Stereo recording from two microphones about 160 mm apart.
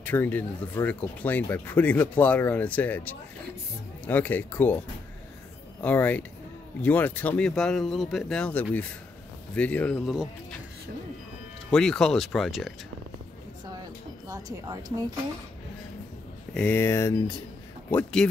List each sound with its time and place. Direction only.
0.0 s speech: 10° left (ahead or behind)
5.8 s speech: 10° left (ahead or behind)
11.7 s speech: 5° left (ahead or behind)
14.2 s a woman's voice: 20° right (ahead or behind)
16.5 s speech: 10° left (ahead or behind)
18.2 s speech: 5° left (ahead or behind)